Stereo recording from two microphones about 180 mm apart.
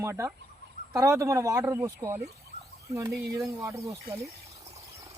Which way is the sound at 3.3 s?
15° right (ahead or behind).